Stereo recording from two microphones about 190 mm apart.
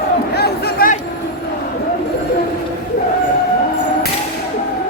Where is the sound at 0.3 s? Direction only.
55° left (ahead or behind).